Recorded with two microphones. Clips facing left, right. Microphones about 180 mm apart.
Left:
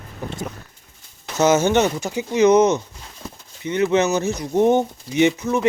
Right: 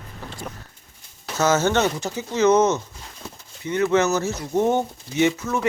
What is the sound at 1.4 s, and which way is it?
Speech, 15° left (ahead or behind).